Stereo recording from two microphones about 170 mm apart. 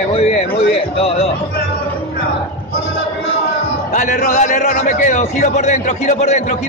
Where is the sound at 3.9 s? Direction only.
50° left (ahead or behind).